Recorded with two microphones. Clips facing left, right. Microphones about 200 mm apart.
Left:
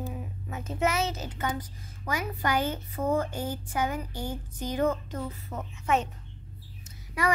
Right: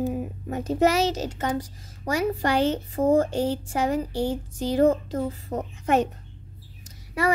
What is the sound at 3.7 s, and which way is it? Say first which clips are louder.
Speech: right 2 dB; 30° right (ahead or behind).